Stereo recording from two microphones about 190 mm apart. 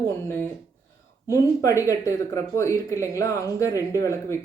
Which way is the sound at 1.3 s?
15° left (ahead or behind).